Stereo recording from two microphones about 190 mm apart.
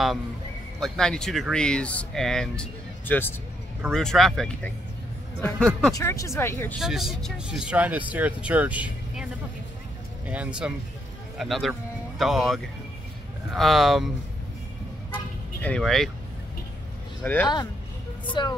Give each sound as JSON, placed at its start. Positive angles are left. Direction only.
{"t": 0.7, "sound": "speech", "side_deg": 5}
{"t": 5.9, "sound": "speech", "side_deg": 15}
{"t": 6.8, "sound": "speech", "side_deg": 0}
{"t": 15.6, "sound": "speech", "side_deg": 5}
{"t": 17.2, "sound": "speech", "side_deg": 10}
{"t": 18.2, "sound": "speech", "side_deg": 25}